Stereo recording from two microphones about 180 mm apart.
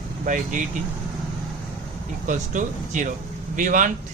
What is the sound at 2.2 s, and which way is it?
Speech, 45° right (ahead or behind).